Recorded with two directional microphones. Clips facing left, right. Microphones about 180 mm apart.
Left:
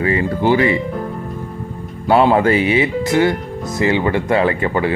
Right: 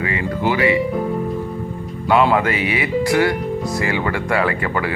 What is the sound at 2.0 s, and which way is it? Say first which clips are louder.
Speech: left 3 dB; 35° left (ahead or behind).